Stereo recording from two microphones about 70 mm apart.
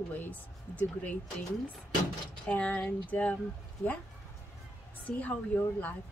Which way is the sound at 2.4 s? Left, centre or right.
Left.